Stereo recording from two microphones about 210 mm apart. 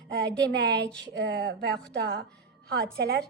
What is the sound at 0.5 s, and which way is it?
A woman's voice, 50° right (ahead or behind).